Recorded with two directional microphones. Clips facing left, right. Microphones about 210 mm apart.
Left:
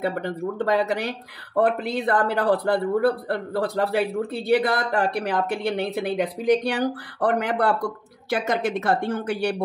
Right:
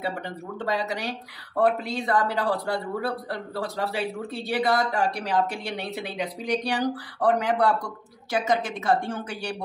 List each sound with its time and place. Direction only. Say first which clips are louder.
0.0 s a man's voice: left 6 dB; 50° left (ahead or behind)